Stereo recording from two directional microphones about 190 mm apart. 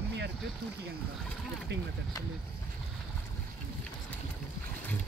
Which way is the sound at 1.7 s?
65° right (ahead or behind).